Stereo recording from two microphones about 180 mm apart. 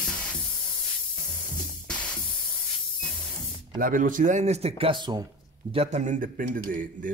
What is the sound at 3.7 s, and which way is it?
Speech, 50° right (ahead or behind).